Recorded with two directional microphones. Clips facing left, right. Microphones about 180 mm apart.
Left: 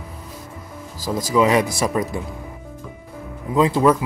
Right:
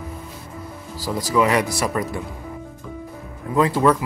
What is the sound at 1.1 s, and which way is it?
Speech, 20° left (ahead or behind).